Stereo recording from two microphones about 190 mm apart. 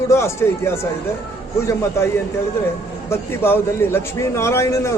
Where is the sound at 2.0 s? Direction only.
15° left (ahead or behind).